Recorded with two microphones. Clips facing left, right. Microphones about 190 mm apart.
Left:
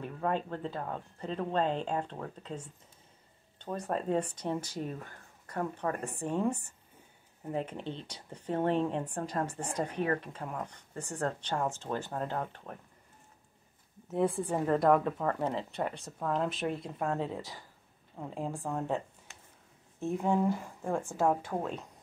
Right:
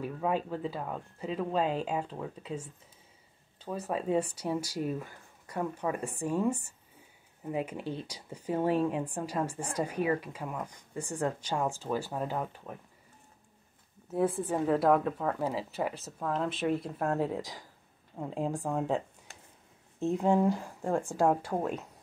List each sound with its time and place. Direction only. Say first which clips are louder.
0.0 s speech: right 2 dB; 5° right (ahead or behind)
14.1 s speech: right 1 dB; centre (ahead or behind)
19.3 s a sound: right 2 dB; 35° right (ahead or behind)
20.0 s speech: right 3 dB; 20° right (ahead or behind)